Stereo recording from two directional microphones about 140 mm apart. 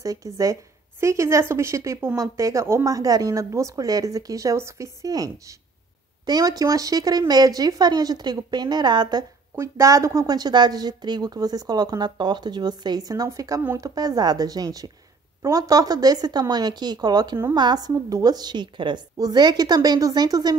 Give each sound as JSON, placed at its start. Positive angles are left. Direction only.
{"t": 0.0, "sound": "speech", "side_deg": -25}